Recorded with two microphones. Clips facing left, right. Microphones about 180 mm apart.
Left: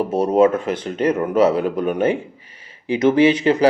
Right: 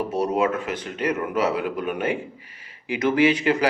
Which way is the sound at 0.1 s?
30° left (ahead or behind).